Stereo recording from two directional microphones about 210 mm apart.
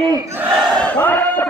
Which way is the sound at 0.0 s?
15° right (ahead or behind).